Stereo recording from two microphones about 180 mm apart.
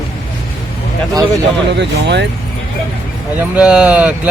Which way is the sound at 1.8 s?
70° right (ahead or behind).